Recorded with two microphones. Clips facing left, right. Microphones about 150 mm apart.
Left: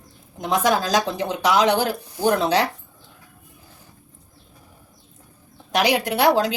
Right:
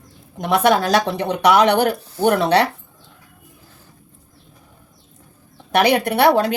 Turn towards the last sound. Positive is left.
turn(degrees=-60)  # may be behind; listen again after turning